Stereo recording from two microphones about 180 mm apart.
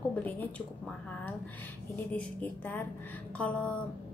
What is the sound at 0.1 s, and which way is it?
Speech, 10° left (ahead or behind).